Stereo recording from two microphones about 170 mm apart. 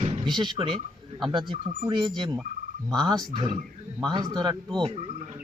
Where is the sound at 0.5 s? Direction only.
30° right (ahead or behind).